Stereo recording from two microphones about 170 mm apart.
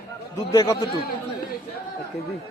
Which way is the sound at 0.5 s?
15° left (ahead or behind).